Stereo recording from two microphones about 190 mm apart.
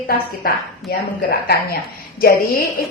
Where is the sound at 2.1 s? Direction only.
50° left (ahead or behind).